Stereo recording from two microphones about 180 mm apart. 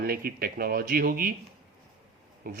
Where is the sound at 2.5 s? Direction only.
50° right (ahead or behind).